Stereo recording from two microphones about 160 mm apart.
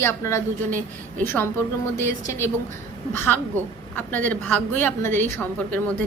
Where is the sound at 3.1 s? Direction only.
10° left (ahead or behind).